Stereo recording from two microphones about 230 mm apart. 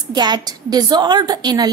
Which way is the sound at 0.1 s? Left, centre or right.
Centre.